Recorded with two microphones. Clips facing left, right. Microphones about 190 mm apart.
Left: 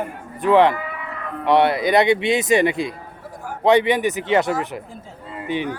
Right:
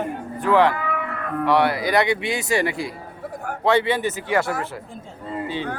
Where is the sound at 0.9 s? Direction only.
55° right (ahead or behind).